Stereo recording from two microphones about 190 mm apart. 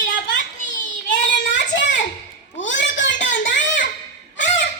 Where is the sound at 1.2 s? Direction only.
65° left (ahead or behind).